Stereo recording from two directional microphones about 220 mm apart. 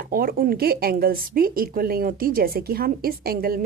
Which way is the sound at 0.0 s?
40° right (ahead or behind).